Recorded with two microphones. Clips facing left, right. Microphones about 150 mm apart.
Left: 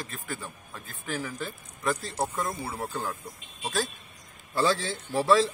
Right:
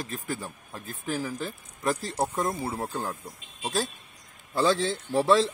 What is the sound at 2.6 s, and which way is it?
Speech, 20° right (ahead or behind).